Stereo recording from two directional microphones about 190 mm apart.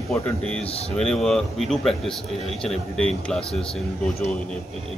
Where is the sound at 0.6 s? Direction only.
30° left (ahead or behind).